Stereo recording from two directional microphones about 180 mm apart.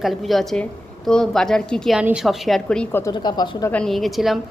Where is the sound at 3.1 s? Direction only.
25° left (ahead or behind).